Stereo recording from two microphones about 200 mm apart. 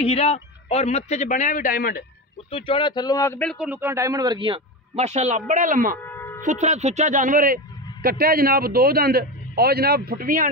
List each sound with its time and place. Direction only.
0.0 s a man's voice: 30° left (ahead or behind); by 2.0 s 45° left (ahead or behind)
2.5 s speech: 25° left (ahead or behind); by 3.5 s 10° left (ahead or behind)
3.5 s speech: 5° right (ahead or behind); by 5.9 s 40° right (ahead or behind)
6.0 s a sound: 10° left (ahead or behind)
6.4 s speech: 35° right (ahead or behind)